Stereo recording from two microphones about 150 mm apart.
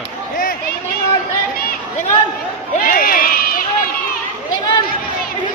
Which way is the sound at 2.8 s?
70° left (ahead or behind).